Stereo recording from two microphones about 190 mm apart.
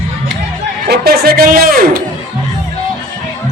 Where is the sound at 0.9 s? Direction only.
55° right (ahead or behind).